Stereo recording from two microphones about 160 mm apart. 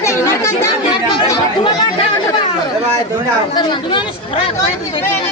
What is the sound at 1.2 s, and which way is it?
Speech, 30° left (ahead or behind).